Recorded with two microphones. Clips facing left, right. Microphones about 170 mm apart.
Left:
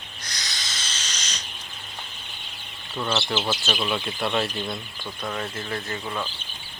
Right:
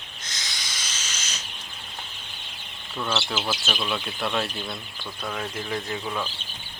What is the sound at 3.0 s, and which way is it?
Speech, 5° left (ahead or behind).